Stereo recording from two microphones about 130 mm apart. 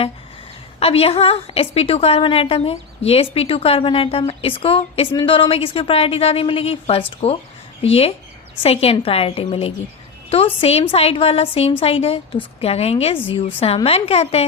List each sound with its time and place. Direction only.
0.8 s a woman's voice: 50° left (ahead or behind)